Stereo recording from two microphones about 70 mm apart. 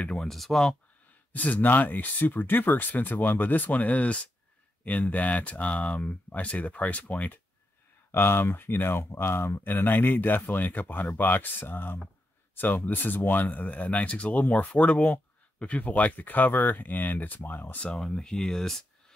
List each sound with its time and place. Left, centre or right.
0.1 s speech: centre
1.3 s speech: left
8.1 s speech: left
17.8 s speech: centre